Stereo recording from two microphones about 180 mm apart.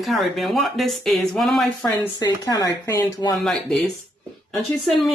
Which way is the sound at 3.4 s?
Centre (ahead or behind).